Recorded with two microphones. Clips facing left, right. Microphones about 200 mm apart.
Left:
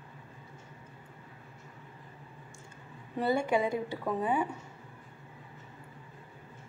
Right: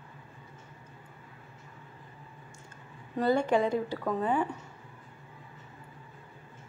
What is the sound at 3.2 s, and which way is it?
A woman's voice, 10° left (ahead or behind).